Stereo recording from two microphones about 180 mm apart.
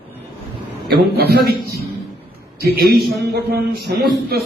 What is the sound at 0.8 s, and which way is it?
A man's voice, 60° right (ahead or behind).